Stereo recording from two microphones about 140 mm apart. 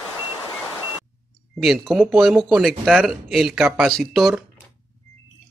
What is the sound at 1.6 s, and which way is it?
Speech, centre (ahead or behind).